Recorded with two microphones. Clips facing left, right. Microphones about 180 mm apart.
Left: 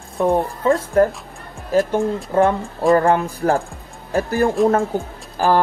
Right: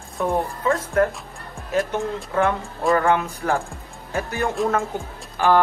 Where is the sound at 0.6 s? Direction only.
35° left (ahead or behind).